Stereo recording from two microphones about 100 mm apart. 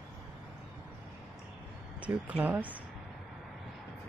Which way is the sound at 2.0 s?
15° right (ahead or behind).